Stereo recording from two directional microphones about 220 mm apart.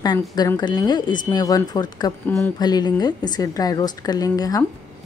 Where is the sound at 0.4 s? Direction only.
20° left (ahead or behind).